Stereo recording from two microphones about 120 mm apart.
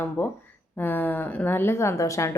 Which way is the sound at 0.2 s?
20° left (ahead or behind).